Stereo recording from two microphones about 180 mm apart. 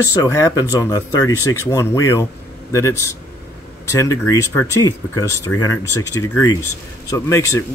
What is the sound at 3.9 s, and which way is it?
Speech, 15° left (ahead or behind).